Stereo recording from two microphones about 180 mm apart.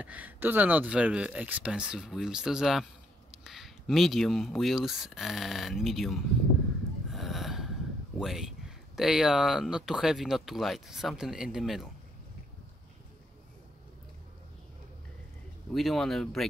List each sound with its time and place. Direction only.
0.0 s speech: 10° right (ahead or behind)
7.1 s snort: centre (ahead or behind)
8.2 s speech: centre (ahead or behind)
15.7 s speech: centre (ahead or behind)